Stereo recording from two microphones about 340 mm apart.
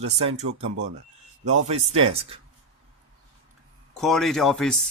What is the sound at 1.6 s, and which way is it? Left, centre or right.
Speech, centre.